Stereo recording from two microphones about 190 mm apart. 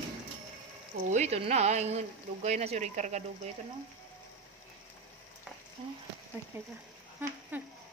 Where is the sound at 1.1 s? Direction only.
35° right (ahead or behind).